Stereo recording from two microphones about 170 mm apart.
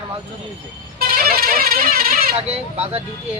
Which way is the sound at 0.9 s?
60° right (ahead or behind).